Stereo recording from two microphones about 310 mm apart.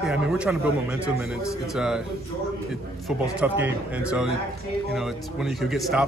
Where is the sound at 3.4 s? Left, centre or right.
Centre.